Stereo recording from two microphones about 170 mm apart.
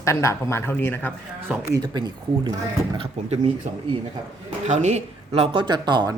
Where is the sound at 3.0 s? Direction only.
35° right (ahead or behind).